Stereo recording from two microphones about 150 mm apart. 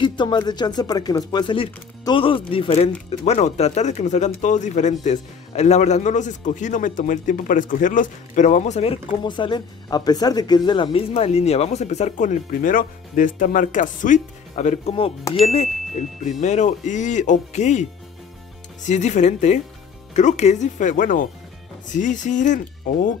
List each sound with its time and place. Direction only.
0.0 s speech: 30° left (ahead or behind); by 17.8 s 50° left (ahead or behind)
18.9 s speech: 50° left (ahead or behind)